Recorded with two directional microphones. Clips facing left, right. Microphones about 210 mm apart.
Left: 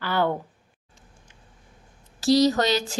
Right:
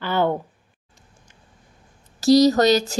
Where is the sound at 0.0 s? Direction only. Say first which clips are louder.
Right 3 dB; 20° right (ahead or behind).